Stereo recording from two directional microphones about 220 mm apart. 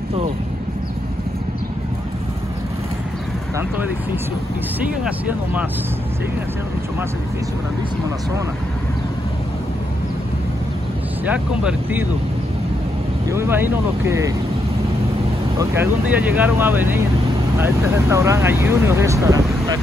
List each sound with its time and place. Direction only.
3.5 s speech: 10° right (ahead or behind)
11.2 s speech: 5° right (ahead or behind)
13.3 s speech: 10° right (ahead or behind)
15.7 s speech: 10° right (ahead or behind)